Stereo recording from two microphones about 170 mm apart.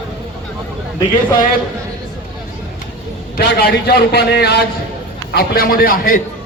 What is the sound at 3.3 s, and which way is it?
A man's voice, 75° left (ahead or behind).